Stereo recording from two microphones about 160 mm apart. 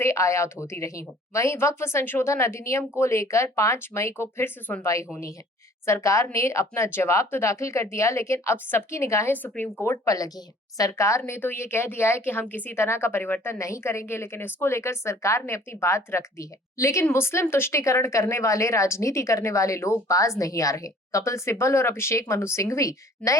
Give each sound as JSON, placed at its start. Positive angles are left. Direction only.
{"t": 0.0, "sound": "speech", "side_deg": 20}